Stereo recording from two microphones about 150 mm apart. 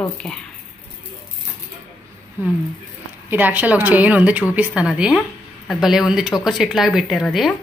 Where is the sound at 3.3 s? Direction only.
10° right (ahead or behind).